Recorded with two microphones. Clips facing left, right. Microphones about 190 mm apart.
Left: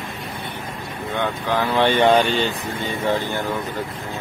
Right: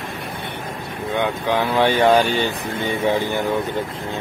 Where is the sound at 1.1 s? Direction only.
15° right (ahead or behind).